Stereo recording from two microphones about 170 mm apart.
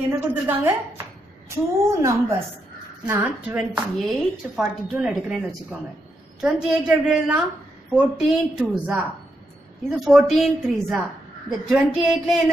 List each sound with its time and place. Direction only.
0.3 s a woman's voice: 10° right (ahead or behind)